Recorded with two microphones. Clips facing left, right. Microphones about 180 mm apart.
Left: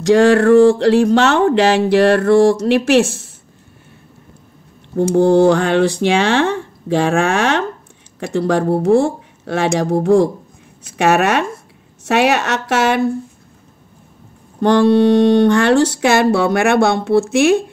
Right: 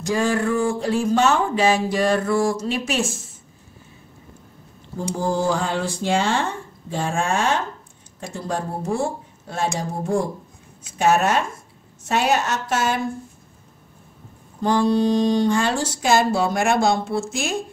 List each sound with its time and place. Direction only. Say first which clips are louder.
0.0 s speech: left 11 dB; 75° left (ahead or behind)
4.9 s speech: left 12 dB; 70° left (ahead or behind)
14.6 s speech: left 7 dB; 75° left (ahead or behind)